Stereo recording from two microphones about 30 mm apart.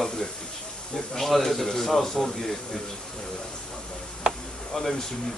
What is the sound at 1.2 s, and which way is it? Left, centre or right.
A man's voice, centre.